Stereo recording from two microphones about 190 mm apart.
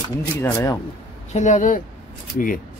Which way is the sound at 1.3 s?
40° left (ahead or behind).